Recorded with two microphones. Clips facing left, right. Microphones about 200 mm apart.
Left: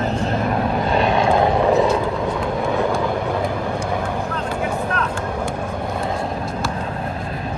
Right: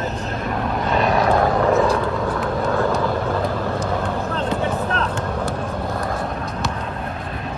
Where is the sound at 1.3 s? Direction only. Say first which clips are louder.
Left 2 dB; 20° left (ahead or behind).